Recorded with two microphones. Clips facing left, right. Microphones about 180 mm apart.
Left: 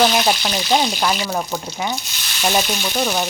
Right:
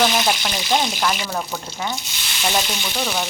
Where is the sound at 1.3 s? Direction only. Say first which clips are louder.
Left 3 dB; 15° left (ahead or behind).